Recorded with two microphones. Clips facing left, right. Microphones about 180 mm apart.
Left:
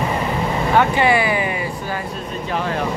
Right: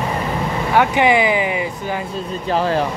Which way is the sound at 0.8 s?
15° right (ahead or behind).